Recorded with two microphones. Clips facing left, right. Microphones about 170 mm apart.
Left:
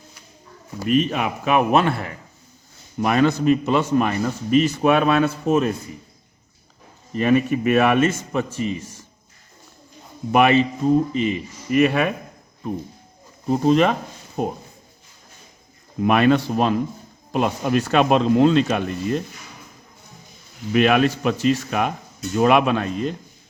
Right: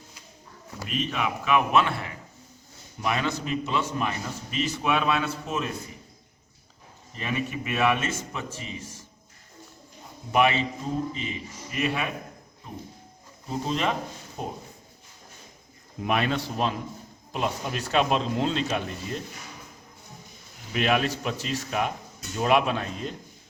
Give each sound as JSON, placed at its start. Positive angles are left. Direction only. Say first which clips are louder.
{"t": 0.9, "sound": "a man's voice", "louder": "left 9 dB", "side_deg": 45}
{"t": 7.1, "sound": "speech", "louder": "left 13 dB", "side_deg": 55}
{"t": 10.3, "sound": "speech", "louder": "left 7 dB", "side_deg": 60}
{"t": 16.0, "sound": "speech", "louder": "left 10 dB", "side_deg": 60}
{"t": 20.7, "sound": "speech", "louder": "left 8 dB", "side_deg": 65}